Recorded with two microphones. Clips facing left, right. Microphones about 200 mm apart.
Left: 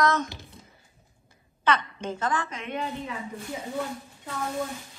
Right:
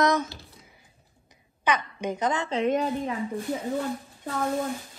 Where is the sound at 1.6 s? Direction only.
15° right (ahead or behind).